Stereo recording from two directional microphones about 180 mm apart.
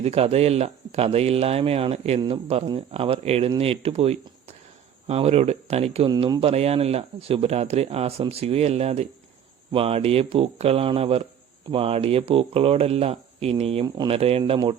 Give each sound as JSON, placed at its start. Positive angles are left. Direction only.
{"t": 0.0, "sound": "speech", "side_deg": -35}
{"t": 6.1, "sound": "speech", "side_deg": -25}
{"t": 13.8, "sound": "speech", "side_deg": -20}
{"t": 14.2, "sound": "speech", "side_deg": -30}